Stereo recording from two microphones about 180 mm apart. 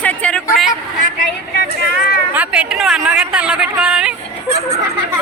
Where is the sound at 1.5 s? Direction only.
60° left (ahead or behind).